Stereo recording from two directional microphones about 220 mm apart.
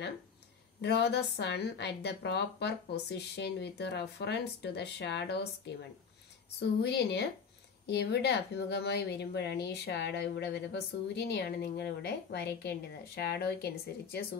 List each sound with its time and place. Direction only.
0.7 s speech: 50° left (ahead or behind)
6.8 s speech: 50° left (ahead or behind)